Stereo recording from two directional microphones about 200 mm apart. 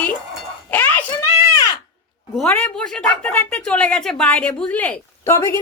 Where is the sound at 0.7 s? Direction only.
10° left (ahead or behind).